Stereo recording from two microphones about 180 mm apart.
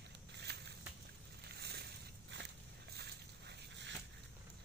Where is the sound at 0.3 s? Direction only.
70° right (ahead or behind).